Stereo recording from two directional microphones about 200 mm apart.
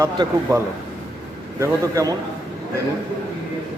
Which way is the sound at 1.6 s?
15° right (ahead or behind).